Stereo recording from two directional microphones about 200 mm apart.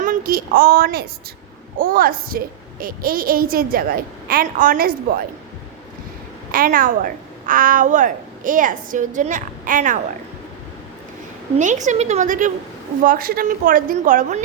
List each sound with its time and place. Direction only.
0.0 s a woman's voice: 45° right (ahead or behind)
6.5 s a woman's voice: 45° right (ahead or behind)
11.5 s a woman's voice: 35° right (ahead or behind)